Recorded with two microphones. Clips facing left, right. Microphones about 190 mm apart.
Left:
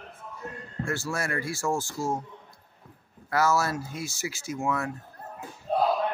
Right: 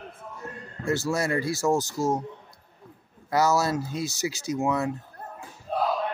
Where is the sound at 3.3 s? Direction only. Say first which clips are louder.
Right 2 dB; 20° right (ahead or behind).